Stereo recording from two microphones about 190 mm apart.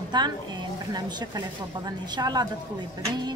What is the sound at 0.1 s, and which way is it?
A woman's voice, 25° right (ahead or behind).